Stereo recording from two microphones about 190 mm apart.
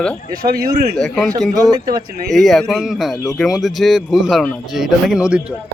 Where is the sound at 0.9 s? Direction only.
Centre (ahead or behind).